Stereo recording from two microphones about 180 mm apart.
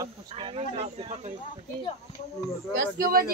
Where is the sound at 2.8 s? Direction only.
55° right (ahead or behind).